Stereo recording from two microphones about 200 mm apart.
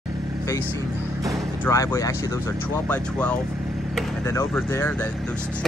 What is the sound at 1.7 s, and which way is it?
Speech, 15° left (ahead or behind).